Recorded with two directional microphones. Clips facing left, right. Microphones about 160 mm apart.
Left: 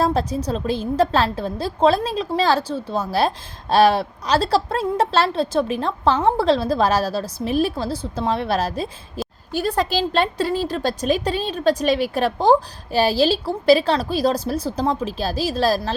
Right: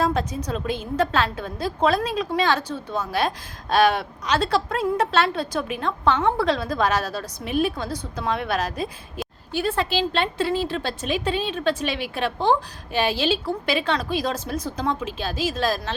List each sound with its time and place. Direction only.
0.0 s a woman's voice: 35° left (ahead or behind)